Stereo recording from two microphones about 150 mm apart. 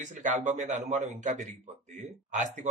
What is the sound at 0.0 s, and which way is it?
A man's voice, 55° right (ahead or behind).